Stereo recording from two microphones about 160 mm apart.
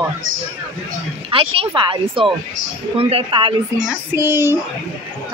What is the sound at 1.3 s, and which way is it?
Speech, 35° right (ahead or behind).